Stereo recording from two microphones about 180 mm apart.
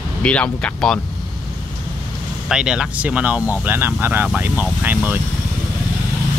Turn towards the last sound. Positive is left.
turn(degrees=-10)  # may be behind; listen again after turning